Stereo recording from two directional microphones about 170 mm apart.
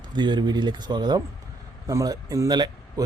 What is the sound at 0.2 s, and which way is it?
Speech, 25° right (ahead or behind).